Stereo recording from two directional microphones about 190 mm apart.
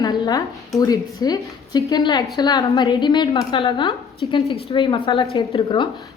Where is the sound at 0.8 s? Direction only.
20° left (ahead or behind).